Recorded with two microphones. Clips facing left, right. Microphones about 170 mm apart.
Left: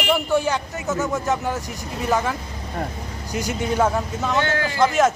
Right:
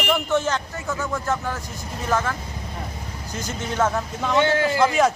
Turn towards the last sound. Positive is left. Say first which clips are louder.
# even
turn(degrees=0)  # may be behind; listen again after turning